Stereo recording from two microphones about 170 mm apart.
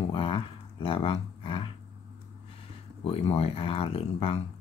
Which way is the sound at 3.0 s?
35° left (ahead or behind).